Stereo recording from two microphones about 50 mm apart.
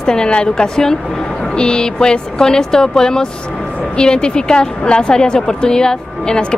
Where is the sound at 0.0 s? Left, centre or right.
Centre.